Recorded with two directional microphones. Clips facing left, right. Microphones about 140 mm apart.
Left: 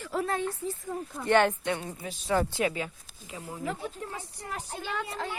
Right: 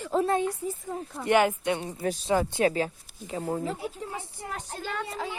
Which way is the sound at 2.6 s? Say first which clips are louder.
Right 5 dB; 35° right (ahead or behind).